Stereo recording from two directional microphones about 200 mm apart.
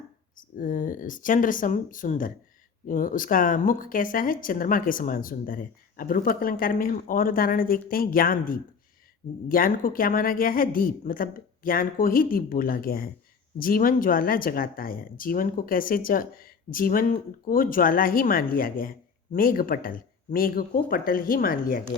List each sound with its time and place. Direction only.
0.3 s speech: 40° left (ahead or behind)